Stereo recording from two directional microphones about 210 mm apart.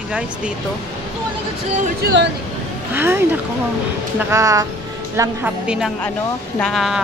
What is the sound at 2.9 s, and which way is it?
A woman's voice, 10° right (ahead or behind).